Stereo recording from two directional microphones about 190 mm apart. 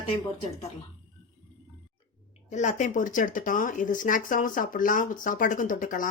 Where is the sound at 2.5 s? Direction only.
40° left (ahead or behind).